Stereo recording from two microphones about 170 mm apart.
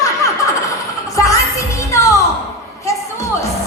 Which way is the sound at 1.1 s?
20° left (ahead or behind).